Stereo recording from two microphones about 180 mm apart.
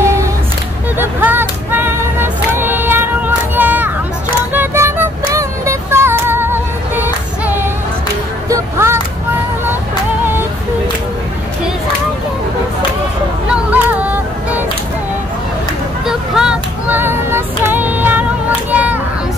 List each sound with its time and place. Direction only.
0.0 s music: 15° right (ahead or behind)
13.5 s music: 10° right (ahead or behind)
16.1 s female singing: 5° right (ahead or behind)
18.7 s a sound: 10° right (ahead or behind)